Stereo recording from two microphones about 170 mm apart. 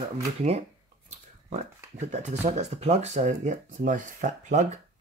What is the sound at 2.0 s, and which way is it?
Speech, 40° right (ahead or behind).